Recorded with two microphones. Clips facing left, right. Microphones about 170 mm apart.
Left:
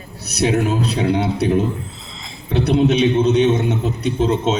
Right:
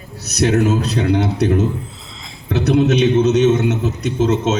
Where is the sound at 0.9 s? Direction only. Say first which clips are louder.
Right 1 dB; 30° left (ahead or behind).